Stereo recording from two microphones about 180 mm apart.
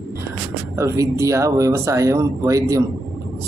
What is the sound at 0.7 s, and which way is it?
Speech, 15° right (ahead or behind).